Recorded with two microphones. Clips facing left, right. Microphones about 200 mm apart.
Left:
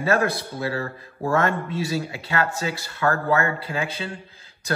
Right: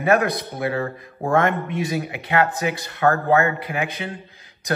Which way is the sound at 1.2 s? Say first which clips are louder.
Right 1 dB; 55° right (ahead or behind).